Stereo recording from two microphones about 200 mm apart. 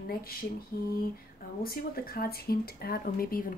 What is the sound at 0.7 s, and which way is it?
Speech, 50° left (ahead or behind).